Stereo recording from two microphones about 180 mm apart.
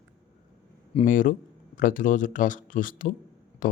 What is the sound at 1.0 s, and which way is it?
Speech, 45° left (ahead or behind).